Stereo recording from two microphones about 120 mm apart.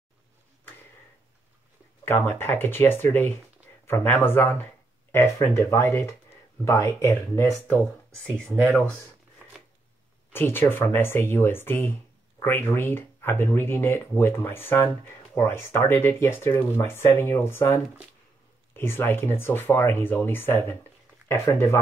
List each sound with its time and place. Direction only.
2.0 s speech: 20° left (ahead or behind)
8.4 s speech: 5° left (ahead or behind)
10.3 s speech: 20° left (ahead or behind)